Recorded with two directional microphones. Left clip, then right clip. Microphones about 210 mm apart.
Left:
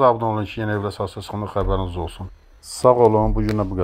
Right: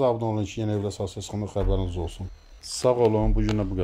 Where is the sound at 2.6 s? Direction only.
10° left (ahead or behind).